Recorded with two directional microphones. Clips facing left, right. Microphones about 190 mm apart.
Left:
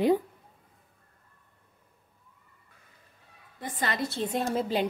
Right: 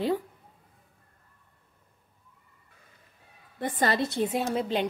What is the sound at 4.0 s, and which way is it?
Speech, 15° right (ahead or behind).